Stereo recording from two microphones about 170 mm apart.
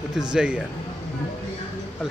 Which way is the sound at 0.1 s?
5° right (ahead or behind).